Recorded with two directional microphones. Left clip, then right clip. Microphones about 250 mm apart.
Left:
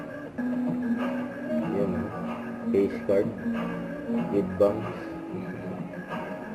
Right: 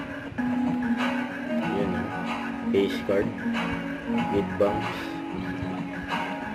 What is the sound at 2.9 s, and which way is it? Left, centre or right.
Speech, centre.